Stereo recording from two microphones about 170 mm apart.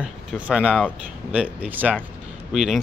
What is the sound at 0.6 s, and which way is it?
Speech, 5° right (ahead or behind).